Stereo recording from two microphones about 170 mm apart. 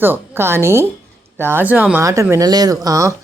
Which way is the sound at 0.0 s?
15° right (ahead or behind).